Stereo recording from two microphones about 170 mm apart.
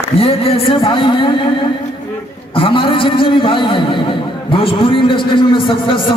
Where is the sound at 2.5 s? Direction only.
30° left (ahead or behind).